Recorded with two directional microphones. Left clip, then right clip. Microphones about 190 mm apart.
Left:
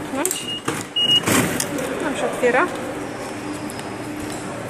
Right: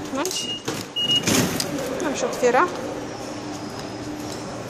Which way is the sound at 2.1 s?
15° right (ahead or behind).